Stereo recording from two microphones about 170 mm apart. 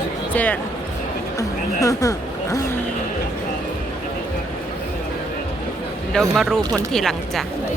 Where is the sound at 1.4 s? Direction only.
20° left (ahead or behind).